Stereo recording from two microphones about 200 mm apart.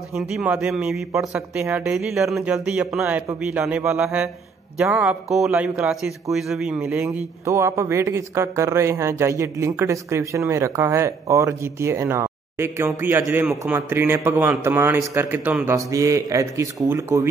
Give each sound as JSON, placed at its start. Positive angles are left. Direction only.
{"t": 0.1, "sound": "speech", "side_deg": -5}